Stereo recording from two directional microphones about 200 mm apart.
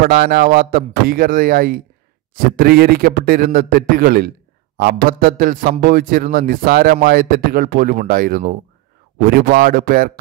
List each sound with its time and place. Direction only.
0.0 s a man's voice: 50° right (ahead or behind)